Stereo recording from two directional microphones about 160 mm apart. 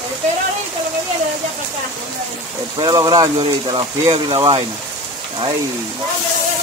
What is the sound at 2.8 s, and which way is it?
Speech, 25° right (ahead or behind).